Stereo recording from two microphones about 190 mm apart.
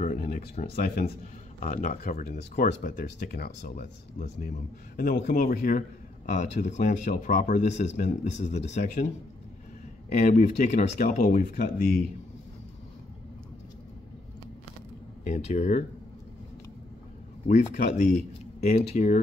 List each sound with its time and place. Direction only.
0.0 s a sound: 45° left (ahead or behind)
0.7 s speech: 50° left (ahead or behind)
10.1 s speech: 45° left (ahead or behind)
15.5 s speech: 40° left (ahead or behind)
17.5 s speech: 40° left (ahead or behind)